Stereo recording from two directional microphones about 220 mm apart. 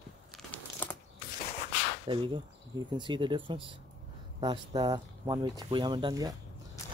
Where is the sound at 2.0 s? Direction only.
20° right (ahead or behind).